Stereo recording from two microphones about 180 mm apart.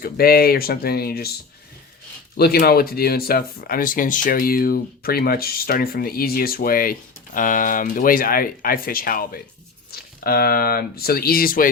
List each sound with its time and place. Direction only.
0.0 s speech: 55° left (ahead or behind)
2.3 s speech: 60° left (ahead or behind)